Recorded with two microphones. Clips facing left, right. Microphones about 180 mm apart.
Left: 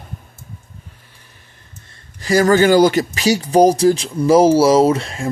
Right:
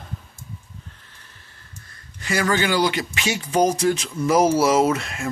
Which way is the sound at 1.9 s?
35° left (ahead or behind).